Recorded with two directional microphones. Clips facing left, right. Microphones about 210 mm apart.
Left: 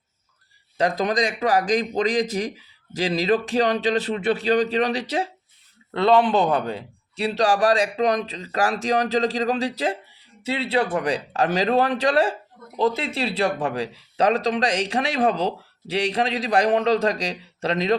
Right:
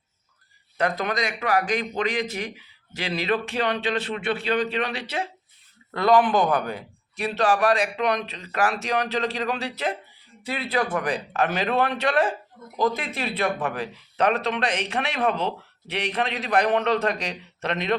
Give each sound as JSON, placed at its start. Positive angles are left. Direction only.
{"t": 0.8, "sound": "speech", "side_deg": 30}
{"t": 5.9, "sound": "speech", "side_deg": 25}